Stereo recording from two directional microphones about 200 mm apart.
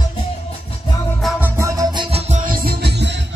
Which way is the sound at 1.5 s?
15° right (ahead or behind).